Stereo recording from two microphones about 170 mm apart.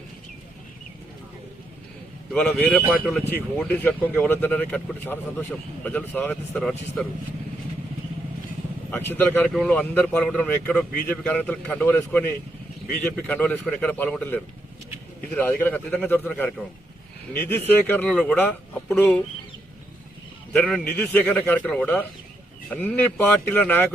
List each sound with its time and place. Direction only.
2.3 s speech: 10° left (ahead or behind)
8.9 s speech: 10° left (ahead or behind)
20.5 s a man's voice: 5° left (ahead or behind)